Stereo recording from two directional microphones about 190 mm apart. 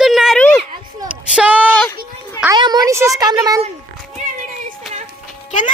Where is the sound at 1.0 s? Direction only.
5° right (ahead or behind).